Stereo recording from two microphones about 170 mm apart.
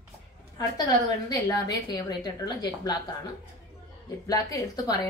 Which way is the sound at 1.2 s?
20° left (ahead or behind).